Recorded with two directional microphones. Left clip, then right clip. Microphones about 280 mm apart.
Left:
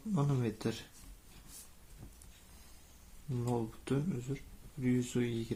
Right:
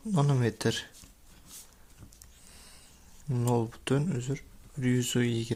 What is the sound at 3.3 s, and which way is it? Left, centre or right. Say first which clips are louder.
Speech: right 7 dB; right.